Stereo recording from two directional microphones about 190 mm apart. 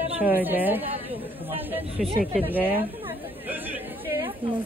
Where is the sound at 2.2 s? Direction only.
5° right (ahead or behind).